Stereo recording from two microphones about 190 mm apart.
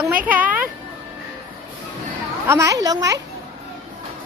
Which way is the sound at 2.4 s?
15° right (ahead or behind).